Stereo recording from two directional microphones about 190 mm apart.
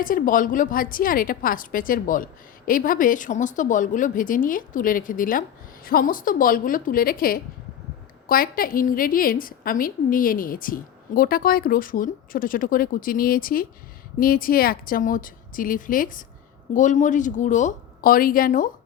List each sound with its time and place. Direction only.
0.0 s a woman's voice: 45° left (ahead or behind)